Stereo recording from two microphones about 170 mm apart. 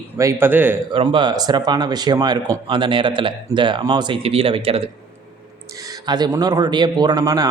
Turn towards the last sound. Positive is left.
turn(degrees=-20)  # may be behind; listen again after turning